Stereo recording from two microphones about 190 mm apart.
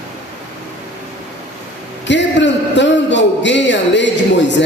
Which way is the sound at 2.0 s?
70° left (ahead or behind).